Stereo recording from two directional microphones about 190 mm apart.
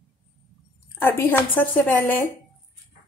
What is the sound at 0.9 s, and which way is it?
A woman's voice, 10° left (ahead or behind).